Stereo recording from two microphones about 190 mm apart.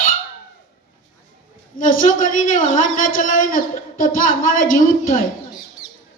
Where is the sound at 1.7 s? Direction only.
45° left (ahead or behind).